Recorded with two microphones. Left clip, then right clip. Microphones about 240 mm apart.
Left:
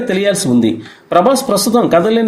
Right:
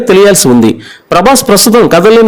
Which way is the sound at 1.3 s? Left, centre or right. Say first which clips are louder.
Right 7 dB; right.